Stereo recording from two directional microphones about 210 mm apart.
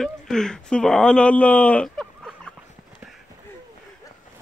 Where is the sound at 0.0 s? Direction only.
5° left (ahead or behind).